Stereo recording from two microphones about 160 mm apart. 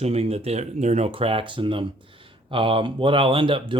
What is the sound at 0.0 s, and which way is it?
Speech, 40° right (ahead or behind).